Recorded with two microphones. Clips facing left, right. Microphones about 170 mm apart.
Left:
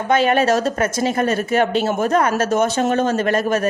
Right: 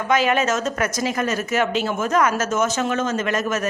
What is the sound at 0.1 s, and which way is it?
Speech, 30° left (ahead or behind).